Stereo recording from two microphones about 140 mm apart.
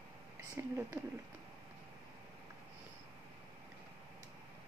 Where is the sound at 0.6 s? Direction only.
15° right (ahead or behind).